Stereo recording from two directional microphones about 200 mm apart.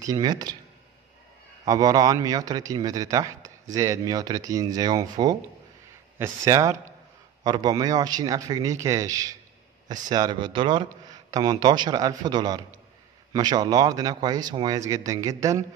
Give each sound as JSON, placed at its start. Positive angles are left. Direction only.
{"t": 0.0, "sound": "speech", "side_deg": -20}
{"t": 1.7, "sound": "speech", "side_deg": -20}